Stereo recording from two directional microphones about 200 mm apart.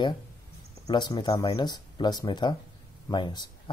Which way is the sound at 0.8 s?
20° left (ahead or behind).